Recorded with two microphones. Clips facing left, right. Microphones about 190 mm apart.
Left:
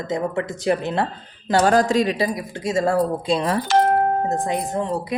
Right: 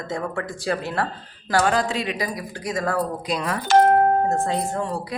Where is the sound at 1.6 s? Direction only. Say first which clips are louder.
Left 6 dB; 40° left (ahead or behind).